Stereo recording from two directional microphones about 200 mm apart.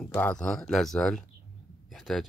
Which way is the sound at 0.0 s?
5° left (ahead or behind).